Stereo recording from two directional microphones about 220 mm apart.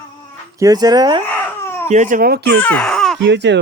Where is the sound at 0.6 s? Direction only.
15° right (ahead or behind).